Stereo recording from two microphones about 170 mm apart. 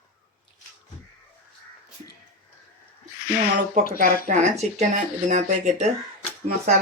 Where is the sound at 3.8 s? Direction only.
60° left (ahead or behind).